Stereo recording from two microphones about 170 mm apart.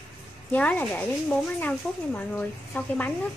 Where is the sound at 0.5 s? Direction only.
10° left (ahead or behind).